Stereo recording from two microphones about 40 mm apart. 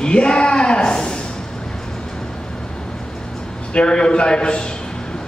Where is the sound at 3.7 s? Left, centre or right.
Left.